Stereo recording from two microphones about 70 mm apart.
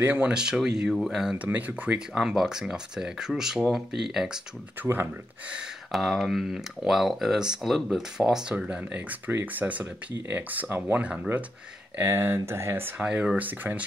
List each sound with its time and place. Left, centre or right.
0.0 s speech: right
0.3 s speech: centre
1.3 s speech: right
2.1 s speech: centre
5.9 s speech: centre; by 11.0 s right
12.0 s speech: right
12.9 s speech: centre